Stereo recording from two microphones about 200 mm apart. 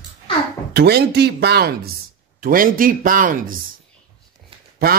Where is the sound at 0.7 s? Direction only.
55° right (ahead or behind).